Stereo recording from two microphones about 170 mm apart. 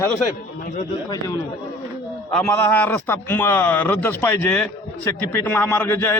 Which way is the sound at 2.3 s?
5° left (ahead or behind).